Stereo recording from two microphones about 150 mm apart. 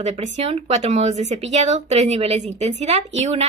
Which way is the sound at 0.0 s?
45° right (ahead or behind).